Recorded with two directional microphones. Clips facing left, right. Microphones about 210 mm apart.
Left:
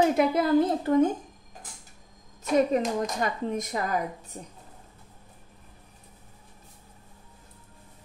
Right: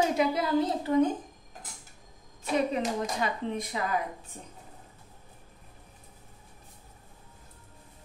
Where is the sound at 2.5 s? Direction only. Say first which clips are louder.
Left 5 dB; 45° left (ahead or behind).